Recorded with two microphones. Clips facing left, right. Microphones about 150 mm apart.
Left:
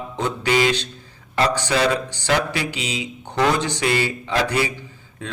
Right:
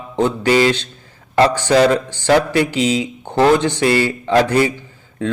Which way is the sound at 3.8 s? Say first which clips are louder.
Right 6 dB; 45° right (ahead or behind).